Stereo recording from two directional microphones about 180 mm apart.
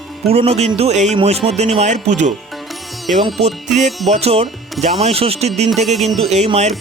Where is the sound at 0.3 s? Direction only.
35° right (ahead or behind).